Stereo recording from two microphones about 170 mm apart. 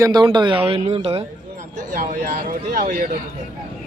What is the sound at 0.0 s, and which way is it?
Speech, 20° right (ahead or behind).